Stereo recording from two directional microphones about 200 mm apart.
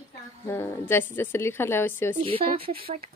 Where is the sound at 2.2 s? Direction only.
30° right (ahead or behind).